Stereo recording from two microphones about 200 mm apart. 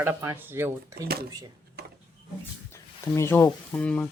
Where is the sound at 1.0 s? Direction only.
50° right (ahead or behind).